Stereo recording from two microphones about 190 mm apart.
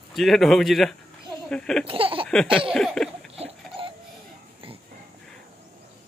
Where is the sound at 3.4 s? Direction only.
30° right (ahead or behind).